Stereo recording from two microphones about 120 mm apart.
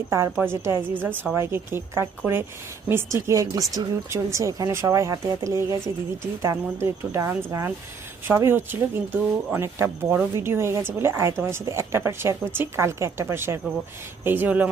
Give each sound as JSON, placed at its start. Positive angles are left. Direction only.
{"t": 0.1, "sound": "a woman's voice", "side_deg": -20}